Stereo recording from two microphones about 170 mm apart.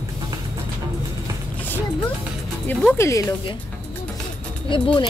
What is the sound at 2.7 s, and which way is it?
Speech, 10° left (ahead or behind).